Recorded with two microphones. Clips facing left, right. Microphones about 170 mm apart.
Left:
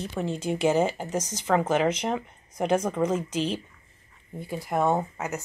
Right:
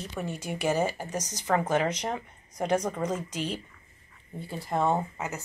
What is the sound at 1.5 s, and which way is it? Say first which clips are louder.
Speech: left 3 dB; 20° left (ahead or behind).